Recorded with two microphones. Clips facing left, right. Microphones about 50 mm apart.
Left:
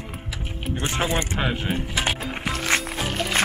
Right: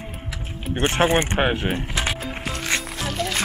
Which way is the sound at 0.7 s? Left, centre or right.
Right.